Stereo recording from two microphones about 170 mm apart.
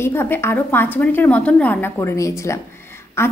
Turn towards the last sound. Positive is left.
turn(degrees=15)  # may be behind; listen again after turning